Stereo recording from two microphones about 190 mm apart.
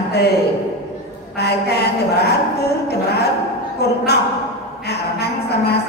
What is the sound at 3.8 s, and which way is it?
A woman's voice, 60° left (ahead or behind).